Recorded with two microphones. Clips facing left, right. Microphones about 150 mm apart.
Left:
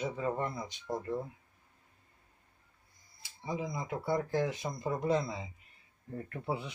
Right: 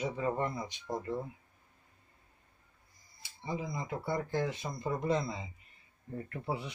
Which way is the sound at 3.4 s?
10° left (ahead or behind).